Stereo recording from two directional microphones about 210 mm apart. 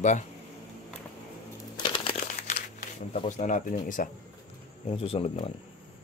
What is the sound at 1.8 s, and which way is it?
Crumpling, 25° left (ahead or behind).